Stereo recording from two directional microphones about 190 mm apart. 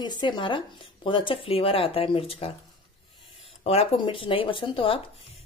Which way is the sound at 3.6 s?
30° left (ahead or behind).